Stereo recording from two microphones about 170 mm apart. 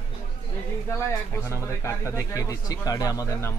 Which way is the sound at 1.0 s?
15° left (ahead or behind).